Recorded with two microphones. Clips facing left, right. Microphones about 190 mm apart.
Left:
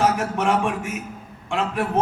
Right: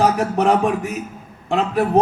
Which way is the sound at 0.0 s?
35° right (ahead or behind).